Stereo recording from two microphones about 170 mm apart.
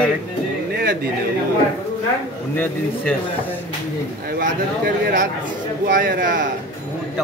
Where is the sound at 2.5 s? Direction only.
10° left (ahead or behind).